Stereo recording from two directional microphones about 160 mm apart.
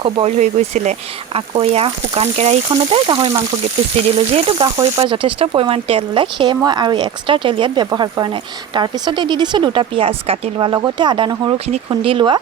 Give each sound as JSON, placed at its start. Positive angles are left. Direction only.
{"t": 0.0, "sound": "speech", "side_deg": -40}